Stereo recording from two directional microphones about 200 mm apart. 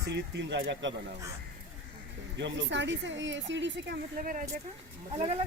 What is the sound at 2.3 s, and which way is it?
Speech, 65° right (ahead or behind).